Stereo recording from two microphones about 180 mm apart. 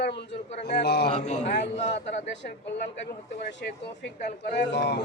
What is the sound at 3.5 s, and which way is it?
A man's voice, 70° left (ahead or behind).